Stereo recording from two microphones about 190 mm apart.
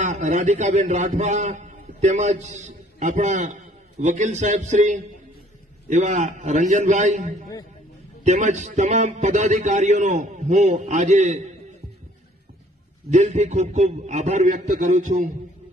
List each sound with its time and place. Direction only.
0.0 s a man's voice: 40° right (ahead or behind)
13.1 s a man's voice: 40° right (ahead or behind)